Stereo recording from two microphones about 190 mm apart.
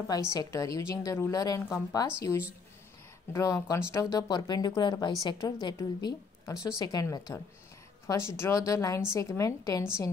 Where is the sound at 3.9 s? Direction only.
20° left (ahead or behind).